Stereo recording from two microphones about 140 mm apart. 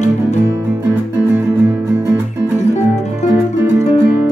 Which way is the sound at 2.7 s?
55° left (ahead or behind).